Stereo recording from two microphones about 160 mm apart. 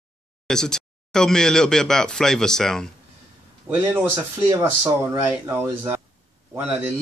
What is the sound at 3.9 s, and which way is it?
Speech, 15° right (ahead or behind).